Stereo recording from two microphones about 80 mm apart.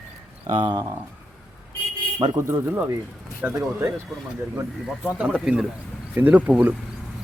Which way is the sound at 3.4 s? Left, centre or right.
Right.